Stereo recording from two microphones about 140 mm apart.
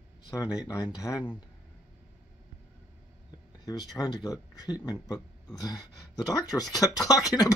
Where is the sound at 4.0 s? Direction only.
15° left (ahead or behind).